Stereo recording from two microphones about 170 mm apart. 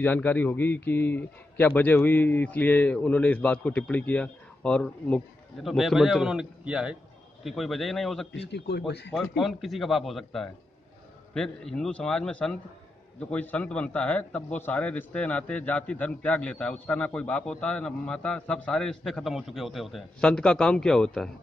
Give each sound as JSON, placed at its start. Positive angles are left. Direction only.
{"t": 0.0, "sound": "a man's voice", "side_deg": 10}
{"t": 8.3, "sound": "speech", "side_deg": 80}
{"t": 9.4, "sound": "a man's voice", "side_deg": 0}